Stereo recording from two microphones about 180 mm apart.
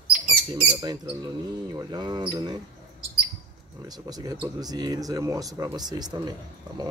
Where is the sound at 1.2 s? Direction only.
20° right (ahead or behind).